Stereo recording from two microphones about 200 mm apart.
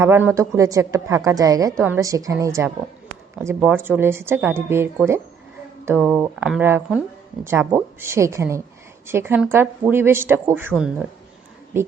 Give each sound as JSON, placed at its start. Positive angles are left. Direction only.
{"t": 0.0, "sound": "a woman's voice", "side_deg": -10}